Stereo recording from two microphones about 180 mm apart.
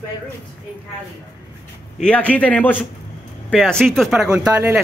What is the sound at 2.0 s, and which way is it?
A man's voice, 5° left (ahead or behind).